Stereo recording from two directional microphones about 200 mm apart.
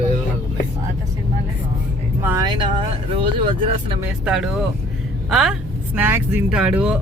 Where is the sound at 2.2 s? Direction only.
15° right (ahead or behind).